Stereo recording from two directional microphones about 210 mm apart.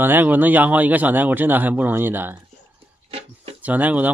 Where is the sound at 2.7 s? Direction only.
25° right (ahead or behind).